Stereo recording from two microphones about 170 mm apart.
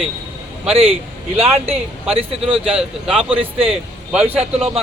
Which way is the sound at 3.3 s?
35° right (ahead or behind).